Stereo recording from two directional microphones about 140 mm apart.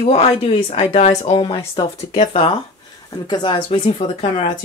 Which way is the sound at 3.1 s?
30° left (ahead or behind).